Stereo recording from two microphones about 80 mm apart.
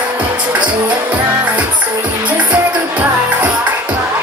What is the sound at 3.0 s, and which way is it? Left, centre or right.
Music, centre.